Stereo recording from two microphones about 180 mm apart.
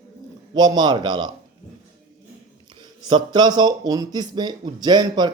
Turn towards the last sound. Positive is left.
turn(degrees=-25)  # may be behind; listen again after turning